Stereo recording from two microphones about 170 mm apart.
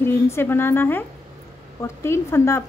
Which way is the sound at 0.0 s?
15° left (ahead or behind).